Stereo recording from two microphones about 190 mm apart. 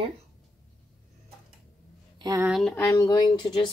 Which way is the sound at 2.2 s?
20° right (ahead or behind).